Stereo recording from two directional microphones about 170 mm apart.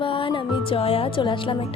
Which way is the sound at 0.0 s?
30° left (ahead or behind).